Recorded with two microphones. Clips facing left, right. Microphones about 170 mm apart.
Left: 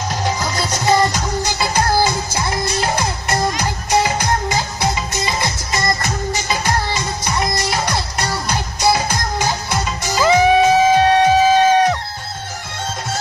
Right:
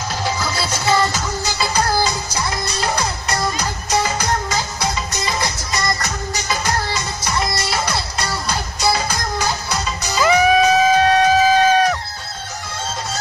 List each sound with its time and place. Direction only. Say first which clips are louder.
0.7 s music: left 3 dB; 15° left (ahead or behind)
4.8 s music: left 2 dB; 20° left (ahead or behind)